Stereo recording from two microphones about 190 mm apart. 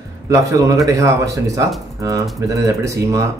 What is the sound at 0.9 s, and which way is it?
Speech, 15° right (ahead or behind).